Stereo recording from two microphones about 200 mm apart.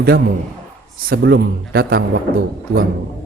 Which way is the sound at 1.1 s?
55° right (ahead or behind).